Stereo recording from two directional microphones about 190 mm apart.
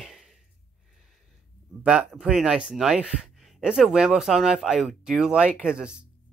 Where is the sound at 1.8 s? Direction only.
5° right (ahead or behind).